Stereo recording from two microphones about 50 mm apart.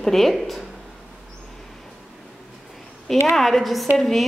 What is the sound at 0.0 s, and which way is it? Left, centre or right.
Speech, centre.